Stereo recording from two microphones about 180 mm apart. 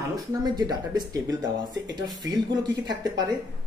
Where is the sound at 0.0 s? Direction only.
20° right (ahead or behind).